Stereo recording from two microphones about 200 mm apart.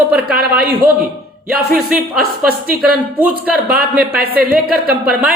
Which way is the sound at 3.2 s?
10° right (ahead or behind).